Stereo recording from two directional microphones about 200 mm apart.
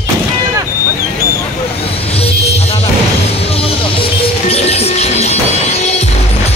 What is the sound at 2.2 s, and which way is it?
Music, 30° left (ahead or behind).